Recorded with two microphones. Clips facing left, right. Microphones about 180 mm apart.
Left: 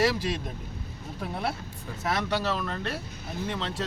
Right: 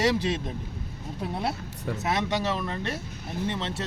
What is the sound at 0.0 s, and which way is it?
Speech, 20° right (ahead or behind).